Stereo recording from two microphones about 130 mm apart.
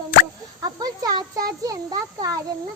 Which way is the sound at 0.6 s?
30° right (ahead or behind).